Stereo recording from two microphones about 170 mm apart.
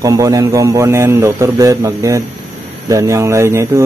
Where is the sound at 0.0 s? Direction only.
20° right (ahead or behind).